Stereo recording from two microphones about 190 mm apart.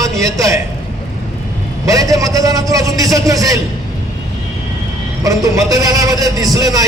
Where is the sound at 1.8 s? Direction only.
15° right (ahead or behind).